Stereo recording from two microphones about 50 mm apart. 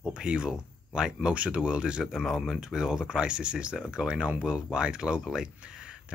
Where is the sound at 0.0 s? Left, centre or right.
Centre.